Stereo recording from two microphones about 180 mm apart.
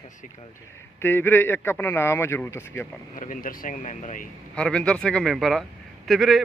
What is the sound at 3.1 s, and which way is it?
Speech, 50° left (ahead or behind).